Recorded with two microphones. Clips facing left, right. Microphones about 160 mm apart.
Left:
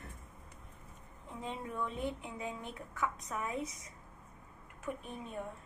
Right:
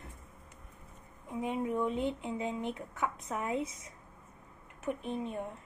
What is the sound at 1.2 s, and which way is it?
Speech, 15° right (ahead or behind).